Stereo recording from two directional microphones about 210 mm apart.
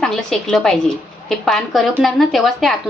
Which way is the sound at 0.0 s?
Centre (ahead or behind).